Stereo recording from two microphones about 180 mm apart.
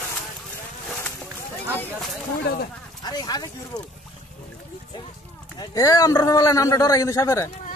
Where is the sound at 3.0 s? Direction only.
20° left (ahead or behind).